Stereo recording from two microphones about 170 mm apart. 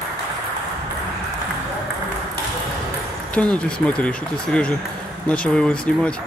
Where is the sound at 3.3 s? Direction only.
5° left (ahead or behind).